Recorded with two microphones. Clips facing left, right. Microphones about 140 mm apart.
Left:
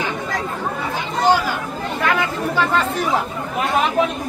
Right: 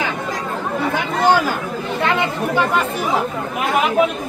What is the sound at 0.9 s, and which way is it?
Chatter, 50° right (ahead or behind).